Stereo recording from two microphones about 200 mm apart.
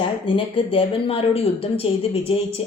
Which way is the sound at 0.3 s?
25° left (ahead or behind).